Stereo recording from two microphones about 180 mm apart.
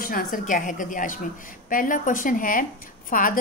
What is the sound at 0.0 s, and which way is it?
A woman's voice, 50° left (ahead or behind).